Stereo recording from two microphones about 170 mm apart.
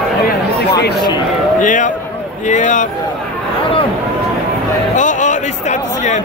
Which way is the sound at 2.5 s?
45° left (ahead or behind).